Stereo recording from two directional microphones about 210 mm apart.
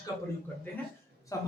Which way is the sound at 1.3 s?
15° left (ahead or behind).